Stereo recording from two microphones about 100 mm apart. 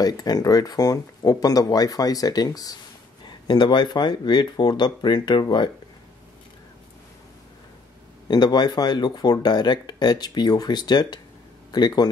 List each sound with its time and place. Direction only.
0.0 s speech: 40° left (ahead or behind)
3.4 s speech: 50° left (ahead or behind)
8.3 s speech: 45° left (ahead or behind)